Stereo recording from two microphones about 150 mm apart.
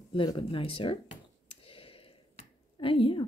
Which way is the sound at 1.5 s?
35° left (ahead or behind).